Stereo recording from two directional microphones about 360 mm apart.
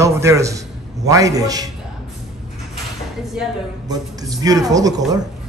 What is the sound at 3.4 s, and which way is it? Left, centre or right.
A man's voice, centre.